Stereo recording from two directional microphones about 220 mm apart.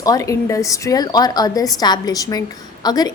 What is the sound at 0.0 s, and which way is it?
A woman's voice, 15° left (ahead or behind).